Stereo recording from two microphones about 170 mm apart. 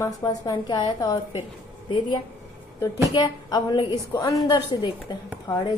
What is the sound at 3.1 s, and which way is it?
A woman's voice, 25° left (ahead or behind).